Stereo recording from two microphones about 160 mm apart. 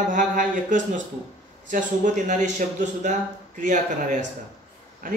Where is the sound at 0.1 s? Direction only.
55° right (ahead or behind).